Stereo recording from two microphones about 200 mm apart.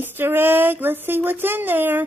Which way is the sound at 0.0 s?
10° right (ahead or behind).